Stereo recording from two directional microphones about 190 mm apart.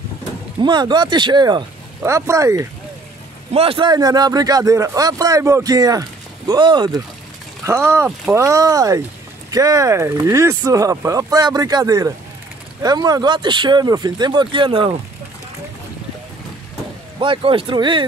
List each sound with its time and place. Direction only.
0.6 s a man's voice: 25° right (ahead or behind)
3.5 s a man's voice: 30° right (ahead or behind)
17.2 s a man's voice: 25° right (ahead or behind)